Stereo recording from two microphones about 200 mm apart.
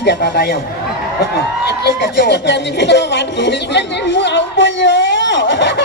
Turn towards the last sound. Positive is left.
turn(degrees=60)  # may be behind; listen again after turning